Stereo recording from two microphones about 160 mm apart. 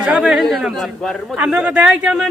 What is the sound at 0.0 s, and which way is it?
A man's voice, 5° right (ahead or behind).